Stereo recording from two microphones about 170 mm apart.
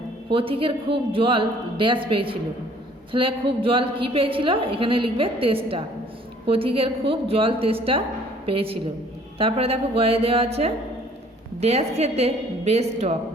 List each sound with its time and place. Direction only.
0.3 s a woman's voice: 30° right (ahead or behind)